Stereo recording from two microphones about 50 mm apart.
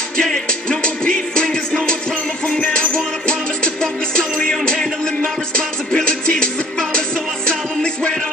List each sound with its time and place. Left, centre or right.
0.2 s music: centre